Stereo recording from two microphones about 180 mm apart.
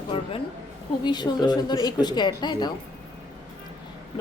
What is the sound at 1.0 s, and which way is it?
A woman's voice, 25° left (ahead or behind).